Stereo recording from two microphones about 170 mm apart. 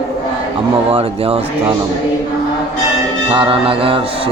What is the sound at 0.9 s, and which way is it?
Speech, 35° right (ahead or behind).